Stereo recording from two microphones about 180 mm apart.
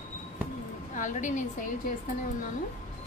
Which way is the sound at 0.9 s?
45° left (ahead or behind).